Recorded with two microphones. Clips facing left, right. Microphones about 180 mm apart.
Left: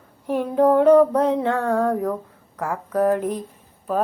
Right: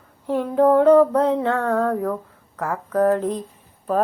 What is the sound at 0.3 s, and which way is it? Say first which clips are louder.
Female singing: right 1 dB; 15° left (ahead or behind).